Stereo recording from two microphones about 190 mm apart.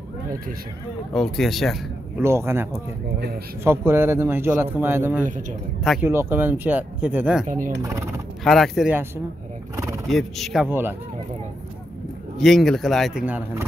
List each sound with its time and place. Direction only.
1.1 s speech: centre (ahead or behind)
2.2 s speech: 15° right (ahead or behind)
7.4 s speech: 45° right (ahead or behind)
8.5 s speech: centre (ahead or behind)
10.0 s speech: centre (ahead or behind)
10.7 s speech: 10° right (ahead or behind)
12.4 s speech: centre (ahead or behind)